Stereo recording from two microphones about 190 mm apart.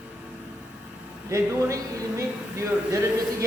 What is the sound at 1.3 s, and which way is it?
Speech, 15° right (ahead or behind).